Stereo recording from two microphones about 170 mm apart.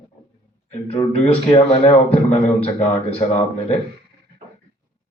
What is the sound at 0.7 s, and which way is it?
A man's voice, 40° left (ahead or behind).